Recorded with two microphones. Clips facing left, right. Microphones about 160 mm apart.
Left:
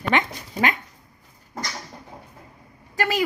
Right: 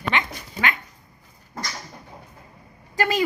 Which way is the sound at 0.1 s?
40° left (ahead or behind).